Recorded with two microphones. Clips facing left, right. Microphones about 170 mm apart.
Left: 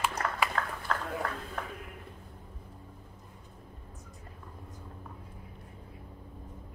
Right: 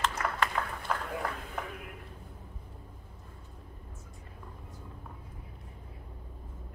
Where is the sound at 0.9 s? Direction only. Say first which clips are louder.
Even; 10° right (ahead or behind).